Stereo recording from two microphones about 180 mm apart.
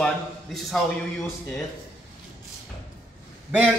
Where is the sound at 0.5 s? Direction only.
Centre (ahead or behind).